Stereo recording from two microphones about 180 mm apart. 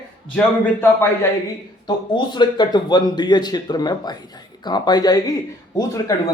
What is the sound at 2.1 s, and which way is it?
Speech, 25° left (ahead or behind).